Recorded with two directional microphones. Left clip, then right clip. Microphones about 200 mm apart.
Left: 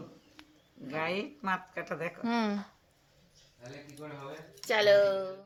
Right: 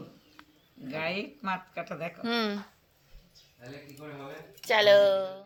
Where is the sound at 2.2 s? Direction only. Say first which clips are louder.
Right 3 dB; 15° left (ahead or behind).